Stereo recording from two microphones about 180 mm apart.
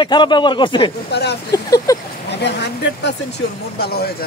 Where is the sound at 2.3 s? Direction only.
70° left (ahead or behind).